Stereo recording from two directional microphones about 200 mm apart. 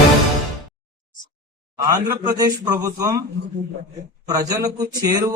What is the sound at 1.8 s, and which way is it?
A man's voice, 15° right (ahead or behind).